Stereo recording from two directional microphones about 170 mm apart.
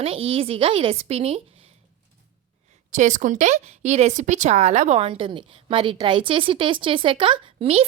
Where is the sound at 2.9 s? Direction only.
45° right (ahead or behind).